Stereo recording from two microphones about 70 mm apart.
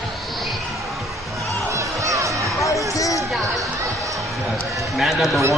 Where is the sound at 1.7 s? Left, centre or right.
Right.